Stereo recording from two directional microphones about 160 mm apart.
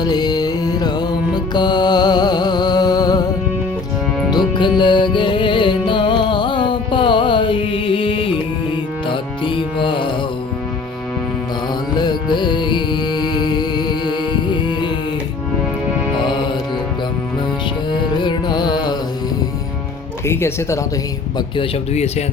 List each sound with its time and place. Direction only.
0.0 s music: 25° left (ahead or behind)
11.9 s music: 30° left (ahead or behind)
17.9 s carnatic music: 30° left (ahead or behind)
20.2 s music: 15° left (ahead or behind)
21.3 s a man's voice: 30° left (ahead or behind)